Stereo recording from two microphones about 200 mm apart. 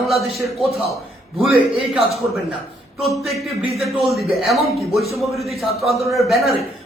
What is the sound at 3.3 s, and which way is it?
Speech, centre (ahead or behind).